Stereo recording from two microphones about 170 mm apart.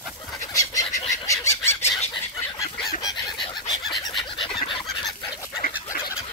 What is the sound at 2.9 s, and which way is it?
Chicken, 25° left (ahead or behind).